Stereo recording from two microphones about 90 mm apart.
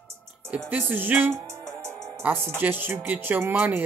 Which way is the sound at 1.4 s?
35° right (ahead or behind).